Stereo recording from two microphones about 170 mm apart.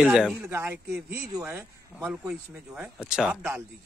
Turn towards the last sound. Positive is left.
turn(degrees=-5)  # may be behind; listen again after turning